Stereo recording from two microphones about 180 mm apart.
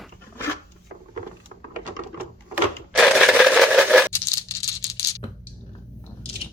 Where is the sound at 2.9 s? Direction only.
Centre (ahead or behind).